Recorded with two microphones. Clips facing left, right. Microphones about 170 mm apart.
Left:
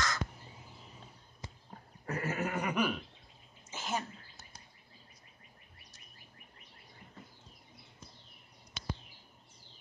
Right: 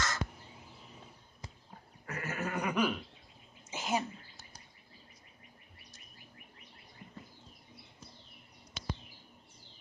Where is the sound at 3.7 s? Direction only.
15° right (ahead or behind).